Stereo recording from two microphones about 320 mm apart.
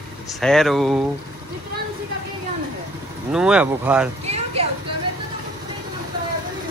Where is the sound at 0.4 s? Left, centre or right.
Centre.